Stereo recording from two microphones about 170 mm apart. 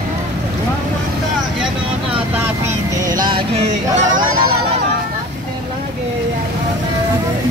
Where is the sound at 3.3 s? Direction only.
35° right (ahead or behind).